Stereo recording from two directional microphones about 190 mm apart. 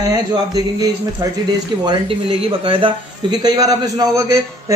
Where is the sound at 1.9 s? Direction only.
25° right (ahead or behind).